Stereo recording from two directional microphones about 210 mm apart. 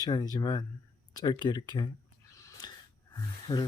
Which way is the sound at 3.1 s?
20° left (ahead or behind).